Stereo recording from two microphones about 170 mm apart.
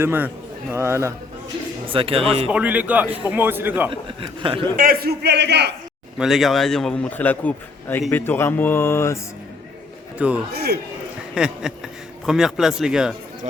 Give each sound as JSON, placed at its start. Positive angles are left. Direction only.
{"t": 0.0, "sound": "a man's voice", "side_deg": -10}
{"t": 1.9, "sound": "speech", "side_deg": -30}
{"t": 2.5, "sound": "a man's voice", "side_deg": -10}
{"t": 4.2, "sound": "speech", "side_deg": -30}
{"t": 4.8, "sound": "a man's voice", "side_deg": -60}
{"t": 6.1, "sound": "a man's voice", "side_deg": 0}
{"t": 10.2, "sound": "a man's voice", "side_deg": -5}
{"t": 10.5, "sound": "a man's voice", "side_deg": -70}
{"t": 11.3, "sound": "a man's voice", "side_deg": -5}